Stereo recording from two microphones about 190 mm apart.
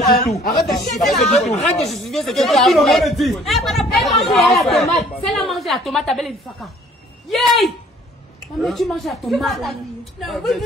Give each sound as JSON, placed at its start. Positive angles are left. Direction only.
{"t": 0.0, "sound": "speech", "side_deg": 35}
{"t": 0.4, "sound": "speech", "side_deg": 55}
{"t": 0.9, "sound": "speech", "side_deg": 0}